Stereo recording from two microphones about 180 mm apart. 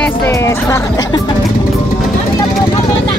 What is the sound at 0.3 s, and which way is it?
Music, 15° left (ahead or behind).